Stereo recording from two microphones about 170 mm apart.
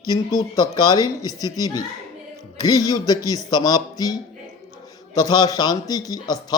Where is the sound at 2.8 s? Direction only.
20° left (ahead or behind).